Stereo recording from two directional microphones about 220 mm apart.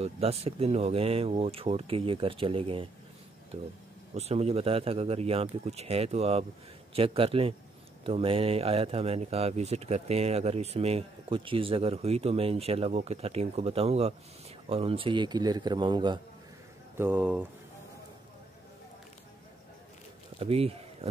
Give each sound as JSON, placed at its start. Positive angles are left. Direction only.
{"t": 0.0, "sound": "speech", "side_deg": -25}
{"t": 16.9, "sound": "speech", "side_deg": -10}
{"t": 20.3, "sound": "speech", "side_deg": -25}